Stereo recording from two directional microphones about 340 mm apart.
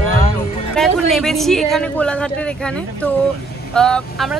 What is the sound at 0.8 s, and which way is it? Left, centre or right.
Speech, centre.